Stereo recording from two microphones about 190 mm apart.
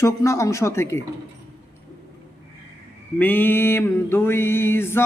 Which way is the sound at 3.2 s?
10° left (ahead or behind).